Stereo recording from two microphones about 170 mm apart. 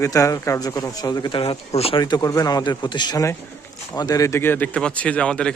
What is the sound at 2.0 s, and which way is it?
Speech, 20° left (ahead or behind).